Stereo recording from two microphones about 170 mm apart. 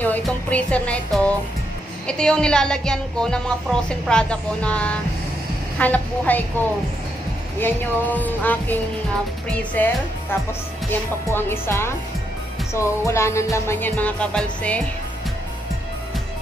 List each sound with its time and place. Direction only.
0.0 s a woman's voice: 10° left (ahead or behind)
5.8 s music: 10° left (ahead or behind)
7.6 s music: 10° left (ahead or behind)
9.8 s music: 10° left (ahead or behind)